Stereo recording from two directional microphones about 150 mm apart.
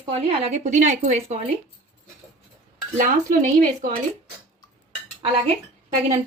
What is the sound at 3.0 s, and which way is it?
Speech, 55° right (ahead or behind).